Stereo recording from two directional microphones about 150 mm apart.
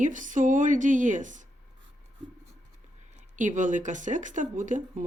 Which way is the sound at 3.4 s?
60° right (ahead or behind).